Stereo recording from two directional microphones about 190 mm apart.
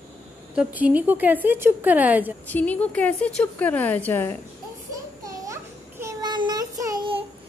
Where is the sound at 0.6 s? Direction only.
5° right (ahead or behind).